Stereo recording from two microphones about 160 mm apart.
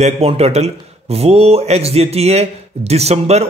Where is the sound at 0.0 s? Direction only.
40° right (ahead or behind).